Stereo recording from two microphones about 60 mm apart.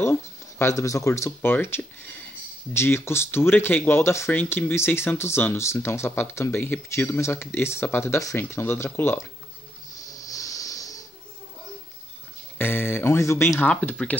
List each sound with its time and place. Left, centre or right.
0.0 s speech: left
1.4 s speech: left
4.3 s speech: left
6.5 s speech: left
6.9 s speech: left
7.8 s speech: left
9.9 s snoring: left
12.5 s speech: left
13.2 s speech: left
13.6 s speech: left